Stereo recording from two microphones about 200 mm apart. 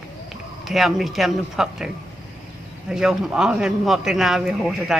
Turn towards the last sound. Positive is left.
turn(degrees=0)  # may be behind; listen again after turning